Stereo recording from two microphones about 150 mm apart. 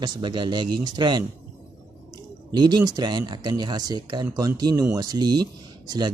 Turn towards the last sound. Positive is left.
turn(degrees=-30)  # may be behind; listen again after turning